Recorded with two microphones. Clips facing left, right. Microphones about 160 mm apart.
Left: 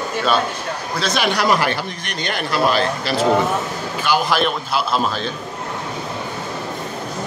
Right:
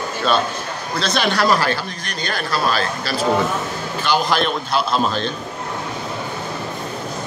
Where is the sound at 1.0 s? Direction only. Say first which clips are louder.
Right 1 dB; 10° left (ahead or behind).